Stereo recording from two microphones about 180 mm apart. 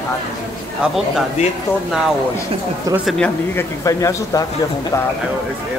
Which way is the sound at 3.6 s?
15° left (ahead or behind).